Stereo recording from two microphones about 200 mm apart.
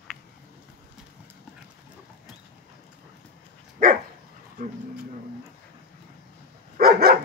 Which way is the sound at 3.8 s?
45° right (ahead or behind).